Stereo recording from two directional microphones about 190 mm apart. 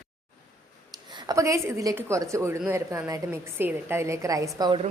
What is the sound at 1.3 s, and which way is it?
A woman's voice, 15° right (ahead or behind).